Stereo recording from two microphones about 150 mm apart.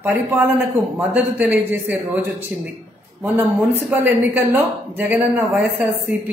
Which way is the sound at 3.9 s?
15° right (ahead or behind).